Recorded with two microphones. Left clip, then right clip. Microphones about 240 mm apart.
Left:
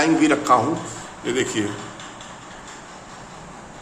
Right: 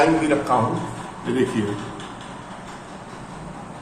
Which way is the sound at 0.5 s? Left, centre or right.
Left.